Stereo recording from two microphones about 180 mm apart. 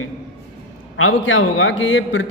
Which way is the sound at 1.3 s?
90° left.